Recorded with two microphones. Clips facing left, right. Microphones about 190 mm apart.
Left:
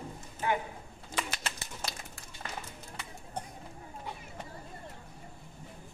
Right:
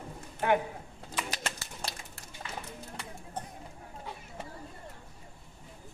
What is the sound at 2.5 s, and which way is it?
Run, 45° left (ahead or behind).